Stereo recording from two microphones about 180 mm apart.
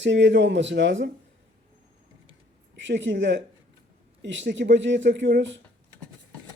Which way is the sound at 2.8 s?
85° right.